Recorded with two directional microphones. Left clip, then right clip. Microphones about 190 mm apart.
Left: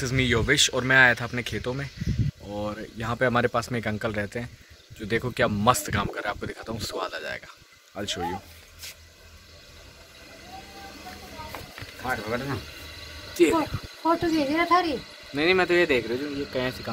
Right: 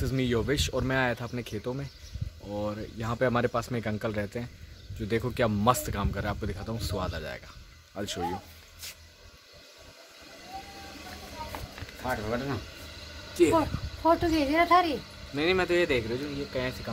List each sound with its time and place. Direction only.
0.0 s speech: 5° right (ahead or behind)
12.0 s speech: 10° right (ahead or behind)
13.4 s speech: 10° left (ahead or behind)
14.0 s speech: centre (ahead or behind)
15.3 s speech: 30° left (ahead or behind)